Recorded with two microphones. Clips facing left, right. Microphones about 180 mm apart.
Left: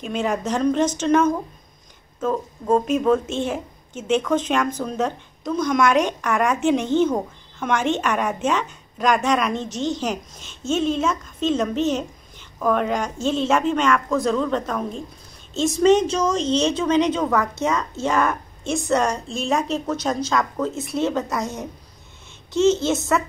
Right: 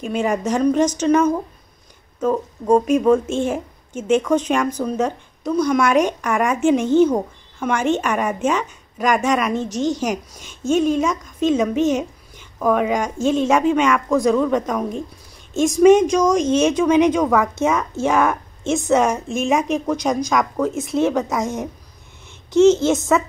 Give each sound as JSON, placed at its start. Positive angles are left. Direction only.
{"t": 0.5, "sound": "a woman's voice", "side_deg": -10}
{"t": 3.3, "sound": "speech", "side_deg": -50}
{"t": 4.2, "sound": "a woman's voice", "side_deg": -10}